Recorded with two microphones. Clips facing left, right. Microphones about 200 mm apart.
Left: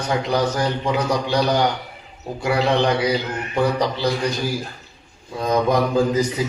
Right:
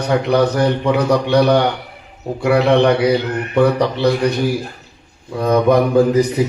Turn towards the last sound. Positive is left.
turn(degrees=-60)  # may be behind; listen again after turning